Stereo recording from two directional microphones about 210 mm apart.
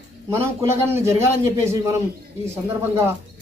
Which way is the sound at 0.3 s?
10° right (ahead or behind).